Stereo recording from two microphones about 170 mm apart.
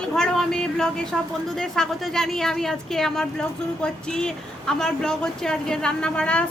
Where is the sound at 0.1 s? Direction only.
5° left (ahead or behind).